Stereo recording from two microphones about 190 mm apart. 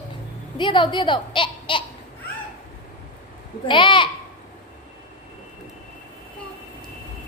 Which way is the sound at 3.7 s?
25° left (ahead or behind).